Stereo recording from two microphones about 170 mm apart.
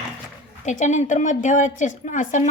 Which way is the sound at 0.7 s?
45° left (ahead or behind).